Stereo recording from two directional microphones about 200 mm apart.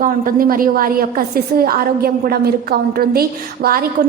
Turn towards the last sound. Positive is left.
turn(degrees=-50)  # may be behind; listen again after turning